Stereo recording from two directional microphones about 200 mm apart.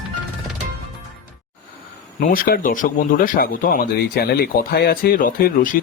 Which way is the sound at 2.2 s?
45° left (ahead or behind).